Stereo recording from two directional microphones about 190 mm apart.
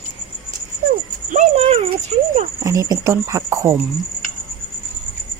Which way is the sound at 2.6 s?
15° right (ahead or behind).